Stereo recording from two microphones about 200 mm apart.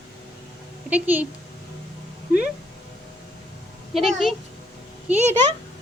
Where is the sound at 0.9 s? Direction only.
10° right (ahead or behind).